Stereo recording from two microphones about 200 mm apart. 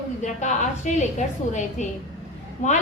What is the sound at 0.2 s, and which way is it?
A woman's voice, 35° left (ahead or behind).